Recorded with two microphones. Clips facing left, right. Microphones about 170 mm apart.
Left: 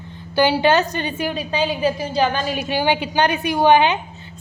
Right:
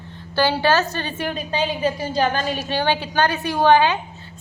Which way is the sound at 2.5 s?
10° left (ahead or behind).